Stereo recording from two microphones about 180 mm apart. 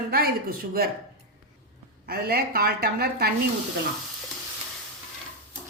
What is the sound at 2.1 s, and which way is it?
Speech, 60° right (ahead or behind).